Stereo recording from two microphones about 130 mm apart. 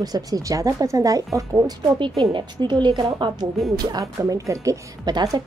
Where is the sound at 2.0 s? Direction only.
40° right (ahead or behind).